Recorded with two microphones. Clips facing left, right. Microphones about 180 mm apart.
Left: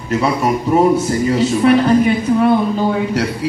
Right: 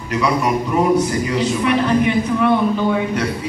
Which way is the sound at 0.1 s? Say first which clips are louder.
Left 2 dB; 30° left (ahead or behind).